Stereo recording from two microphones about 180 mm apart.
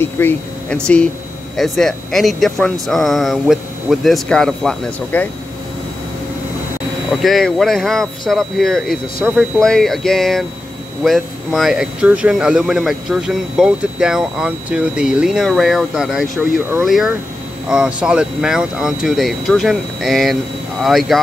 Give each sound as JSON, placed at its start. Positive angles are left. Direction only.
{"t": 0.0, "sound": "speech", "side_deg": 10}
{"t": 7.1, "sound": "speech", "side_deg": 0}